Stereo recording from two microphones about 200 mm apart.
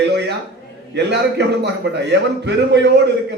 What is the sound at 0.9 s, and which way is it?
A man's voice, 60° right (ahead or behind).